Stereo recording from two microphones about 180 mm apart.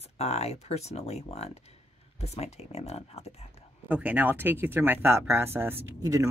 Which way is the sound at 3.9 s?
10° right (ahead or behind).